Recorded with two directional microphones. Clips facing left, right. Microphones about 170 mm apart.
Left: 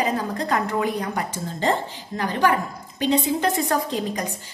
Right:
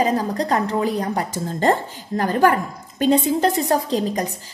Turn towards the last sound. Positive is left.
turn(degrees=-35)  # may be behind; listen again after turning